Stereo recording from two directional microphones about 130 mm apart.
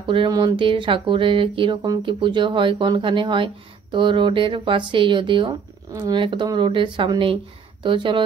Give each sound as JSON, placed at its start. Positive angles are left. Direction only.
{"t": 0.0, "sound": "speech", "side_deg": -40}